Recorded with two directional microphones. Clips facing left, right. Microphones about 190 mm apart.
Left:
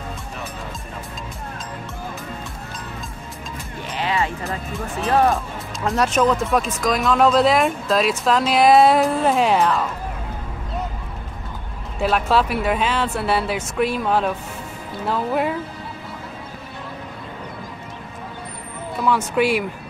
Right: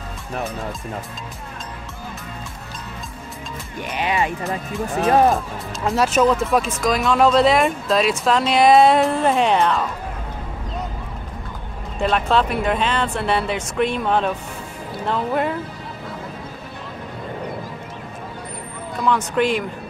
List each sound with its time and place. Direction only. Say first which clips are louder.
3.9 s speech: right 1 dB; 15° right (ahead or behind)
5.9 s speech: right 1 dB; centre (ahead or behind)
12.0 s speech: even; 5° left (ahead or behind)
18.9 s speech: even; 5° left (ahead or behind)